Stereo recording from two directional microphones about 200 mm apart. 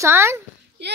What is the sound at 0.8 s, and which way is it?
Speech, 60° right (ahead or behind).